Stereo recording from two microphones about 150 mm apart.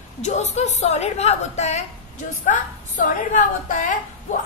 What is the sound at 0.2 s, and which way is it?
A woman's voice, 50° left (ahead or behind).